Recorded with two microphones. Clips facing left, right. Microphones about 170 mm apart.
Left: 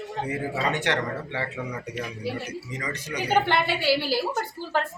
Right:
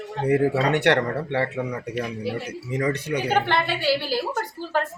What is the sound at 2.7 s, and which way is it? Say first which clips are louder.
Speech: right 11 dB; 60° right (ahead or behind).